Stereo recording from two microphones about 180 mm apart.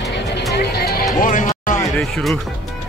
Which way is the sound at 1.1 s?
45° left (ahead or behind).